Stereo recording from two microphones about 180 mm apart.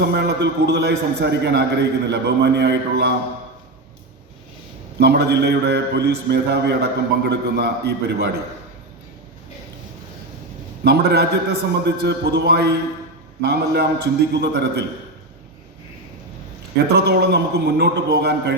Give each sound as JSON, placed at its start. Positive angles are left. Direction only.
{"t": 0.0, "sound": "a man's voice", "side_deg": -65}
{"t": 4.9, "sound": "a man's voice", "side_deg": -65}
{"t": 10.8, "sound": "a man's voice", "side_deg": -65}
{"t": 16.7, "sound": "a man's voice", "side_deg": -65}